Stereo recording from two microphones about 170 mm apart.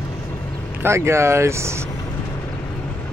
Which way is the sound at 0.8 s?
15° right (ahead or behind).